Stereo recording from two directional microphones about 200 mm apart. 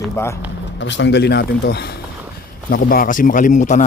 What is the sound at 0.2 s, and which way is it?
Speech, 15° left (ahead or behind).